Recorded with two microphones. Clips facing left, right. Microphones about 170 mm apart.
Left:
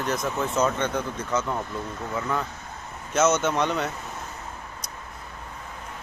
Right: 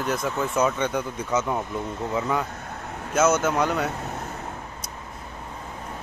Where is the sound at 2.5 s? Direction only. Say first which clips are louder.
Right 4 dB; 65° right (ahead or behind).